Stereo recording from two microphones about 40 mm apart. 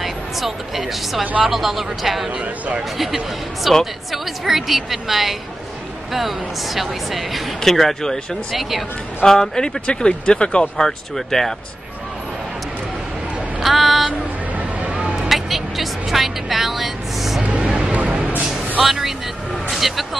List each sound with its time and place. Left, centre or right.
0.0 s speech: centre
3.7 s speech: centre
8.5 s speech: centre
9.2 s speech: centre
10.8 s speech: centre
13.6 s speech: centre
15.1 s vehicle: centre
17.4 s music: right
18.0 s a sound: right
18.8 s vehicle: centre
19.7 s speech: centre